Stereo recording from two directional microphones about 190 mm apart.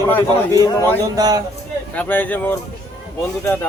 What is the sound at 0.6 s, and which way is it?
Speech, 15° left (ahead or behind).